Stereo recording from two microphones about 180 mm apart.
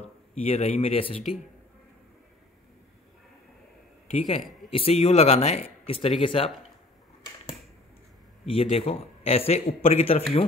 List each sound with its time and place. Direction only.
0.3 s a man's voice: 35° left (ahead or behind)
4.1 s a man's voice: 35° left (ahead or behind)
8.5 s a man's voice: 35° left (ahead or behind)